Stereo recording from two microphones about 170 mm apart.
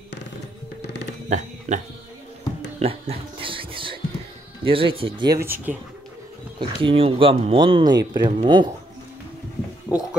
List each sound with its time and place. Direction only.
1.7 s speech: 45° right (ahead or behind)
2.8 s a sound: 35° right (ahead or behind)
4.6 s speech: 30° right (ahead or behind)
5.2 s speech: 20° right (ahead or behind)
6.6 s speech: 30° right (ahead or behind)
9.9 s a sound: 10° right (ahead or behind)